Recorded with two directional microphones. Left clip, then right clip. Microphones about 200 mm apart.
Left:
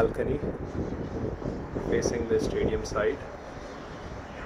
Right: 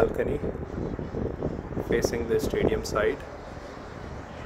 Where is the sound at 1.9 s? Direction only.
25° right (ahead or behind).